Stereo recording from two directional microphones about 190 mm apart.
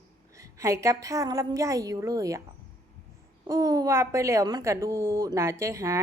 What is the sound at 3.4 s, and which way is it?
A woman's voice, 20° right (ahead or behind).